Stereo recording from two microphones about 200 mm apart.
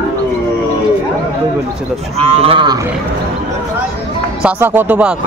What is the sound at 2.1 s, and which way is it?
Cattle, 30° right (ahead or behind).